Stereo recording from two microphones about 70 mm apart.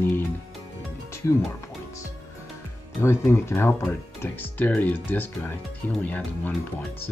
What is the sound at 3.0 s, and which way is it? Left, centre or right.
Speech, left.